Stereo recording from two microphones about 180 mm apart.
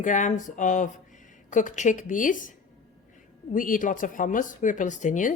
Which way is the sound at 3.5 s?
50° left (ahead or behind).